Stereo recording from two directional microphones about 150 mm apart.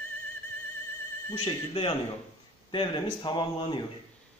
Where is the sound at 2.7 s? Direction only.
30° left (ahead or behind).